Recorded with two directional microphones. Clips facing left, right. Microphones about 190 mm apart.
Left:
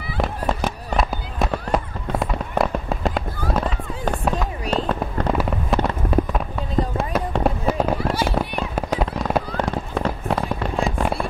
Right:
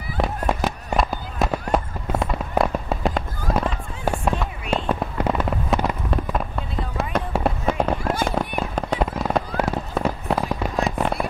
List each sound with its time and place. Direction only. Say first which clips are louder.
0.2 s fireworks: even; centre (ahead or behind)
6.1 s fireworks: left 3 dB; 5° left (ahead or behind)